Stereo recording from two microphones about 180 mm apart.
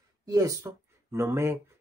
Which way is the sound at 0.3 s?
20° right (ahead or behind).